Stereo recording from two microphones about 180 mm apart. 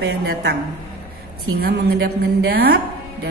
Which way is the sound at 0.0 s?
70° right (ahead or behind).